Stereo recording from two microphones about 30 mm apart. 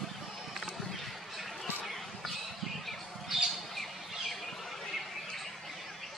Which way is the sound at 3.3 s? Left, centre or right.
Centre.